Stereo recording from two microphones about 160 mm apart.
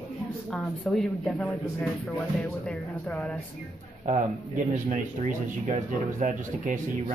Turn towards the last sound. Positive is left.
turn(degrees=-50)  # may be behind; listen again after turning